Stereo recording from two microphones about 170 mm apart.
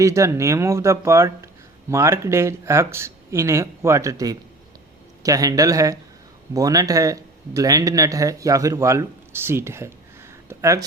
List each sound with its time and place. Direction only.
0.0 s speech: 20° right (ahead or behind)